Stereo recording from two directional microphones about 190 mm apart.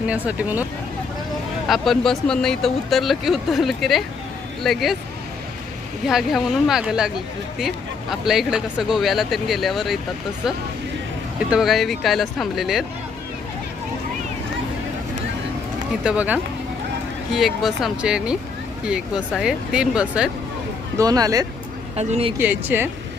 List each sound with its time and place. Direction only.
0.1 s speech: 10° right (ahead or behind)
1.6 s speech: centre (ahead or behind)
6.1 s speech: centre (ahead or behind)
8.1 s speech: centre (ahead or behind)
11.5 s speech: centre (ahead or behind)
16.0 s speech: 5° right (ahead or behind)
21.0 s speech: 20° right (ahead or behind)
21.9 s speech: 30° right (ahead or behind)
22.4 s speech: 10° right (ahead or behind)